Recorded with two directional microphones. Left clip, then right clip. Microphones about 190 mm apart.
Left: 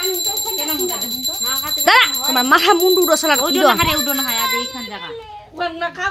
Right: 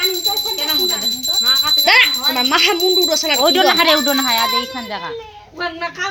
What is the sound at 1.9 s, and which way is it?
Speech, 30° left (ahead or behind).